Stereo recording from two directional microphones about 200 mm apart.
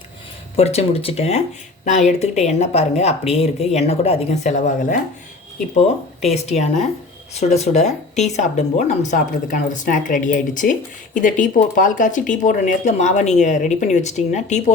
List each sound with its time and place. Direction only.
0.5 s speech: 30° left (ahead or behind)
6.3 s speech: 35° left (ahead or behind)